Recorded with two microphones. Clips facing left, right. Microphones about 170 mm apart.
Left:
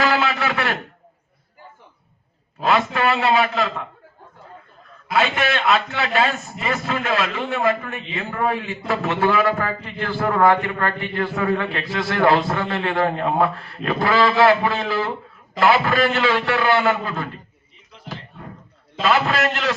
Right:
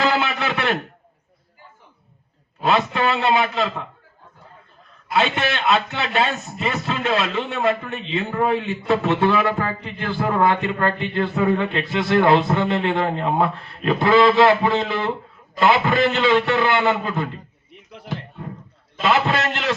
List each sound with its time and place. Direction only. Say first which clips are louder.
0.0 s a sound: left 1 dB; 20° right (ahead or behind)
2.6 s a man's voice: even; 20° right (ahead or behind)
5.1 s a man's voice: left 1 dB; 20° right (ahead or behind)
19.0 s a man's voice: even; 20° right (ahead or behind)